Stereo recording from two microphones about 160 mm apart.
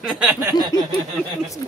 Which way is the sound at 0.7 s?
25° left (ahead or behind).